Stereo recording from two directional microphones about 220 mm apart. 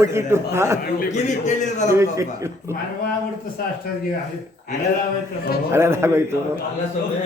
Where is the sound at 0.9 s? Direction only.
35° left (ahead or behind).